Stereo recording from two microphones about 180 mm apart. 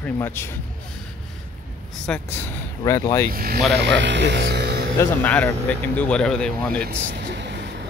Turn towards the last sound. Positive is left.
turn(degrees=5)  # may be behind; listen again after turning